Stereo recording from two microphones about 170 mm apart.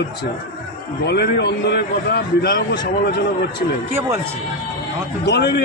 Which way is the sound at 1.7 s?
70° left (ahead or behind).